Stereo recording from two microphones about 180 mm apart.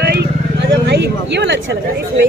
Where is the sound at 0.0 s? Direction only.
65° right (ahead or behind).